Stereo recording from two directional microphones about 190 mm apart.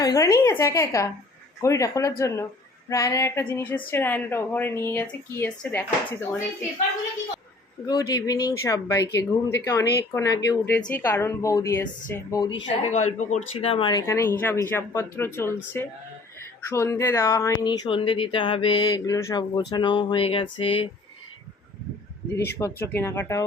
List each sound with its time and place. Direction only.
0.0 s speech: 20° left (ahead or behind)
7.9 s speech: 20° left (ahead or behind)
12.6 s speech: 35° left (ahead or behind)
22.5 s speech: 10° left (ahead or behind)